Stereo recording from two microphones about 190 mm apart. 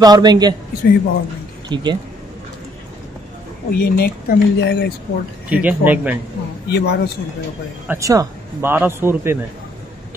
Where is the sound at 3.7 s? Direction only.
55° left (ahead or behind).